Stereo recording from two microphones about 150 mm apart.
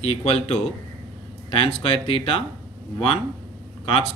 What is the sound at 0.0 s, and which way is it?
A man's voice, 45° left (ahead or behind).